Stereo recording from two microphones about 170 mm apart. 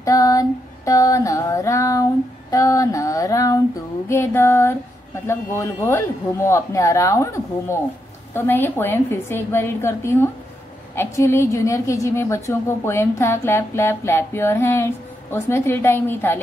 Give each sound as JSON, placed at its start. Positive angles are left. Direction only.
{"t": 0.0, "sound": "female singing", "side_deg": 20}
{"t": 4.1, "sound": "a sound", "side_deg": 15}
{"t": 5.2, "sound": "a woman's voice", "side_deg": 15}